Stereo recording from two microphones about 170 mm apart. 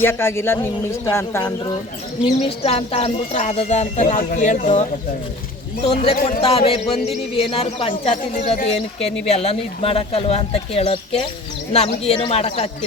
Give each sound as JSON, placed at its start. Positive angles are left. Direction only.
{"t": 0.0, "sound": "speech", "side_deg": 15}
{"t": 2.2, "sound": "speech", "side_deg": 30}
{"t": 4.0, "sound": "speech", "side_deg": 55}
{"t": 8.1, "sound": "speech", "side_deg": 50}